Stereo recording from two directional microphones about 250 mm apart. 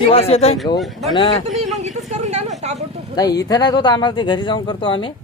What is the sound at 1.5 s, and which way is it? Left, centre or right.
Vehicle, right.